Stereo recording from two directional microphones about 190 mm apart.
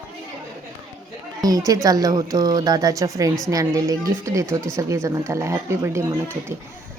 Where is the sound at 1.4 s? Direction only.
20° right (ahead or behind).